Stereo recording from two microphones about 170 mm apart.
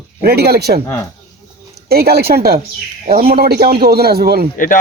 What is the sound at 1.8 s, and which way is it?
A man's voice, 65° right (ahead or behind).